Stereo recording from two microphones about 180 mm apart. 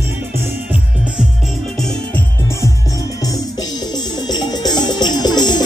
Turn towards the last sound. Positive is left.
turn(degrees=25)  # may be behind; listen again after turning